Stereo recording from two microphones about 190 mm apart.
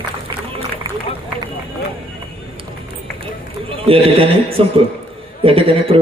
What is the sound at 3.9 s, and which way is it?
A woman's voice, 30° right (ahead or behind).